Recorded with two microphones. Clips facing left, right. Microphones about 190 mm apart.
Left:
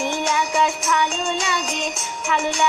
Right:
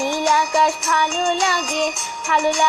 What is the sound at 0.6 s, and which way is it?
Music, 60° right (ahead or behind).